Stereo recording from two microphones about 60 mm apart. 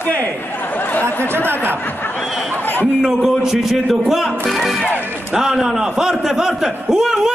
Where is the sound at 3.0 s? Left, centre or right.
Centre.